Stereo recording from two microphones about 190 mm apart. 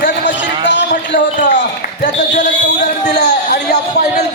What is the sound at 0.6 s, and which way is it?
Speech, 65° left (ahead or behind).